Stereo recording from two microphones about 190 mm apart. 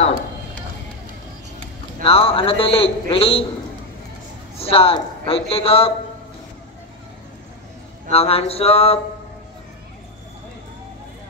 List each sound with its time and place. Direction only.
2.0 s a man's voice: 30° left (ahead or behind)
4.6 s a man's voice: 30° left (ahead or behind)
8.1 s a man's voice: 30° left (ahead or behind)